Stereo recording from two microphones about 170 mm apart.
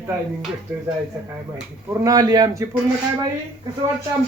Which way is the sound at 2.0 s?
20° right (ahead or behind).